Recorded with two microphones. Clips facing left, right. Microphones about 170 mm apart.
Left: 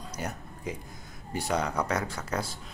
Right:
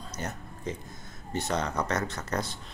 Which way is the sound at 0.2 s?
5° left (ahead or behind).